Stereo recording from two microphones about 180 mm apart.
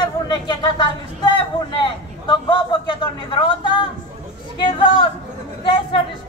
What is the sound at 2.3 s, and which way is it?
A man's voice, 25° left (ahead or behind).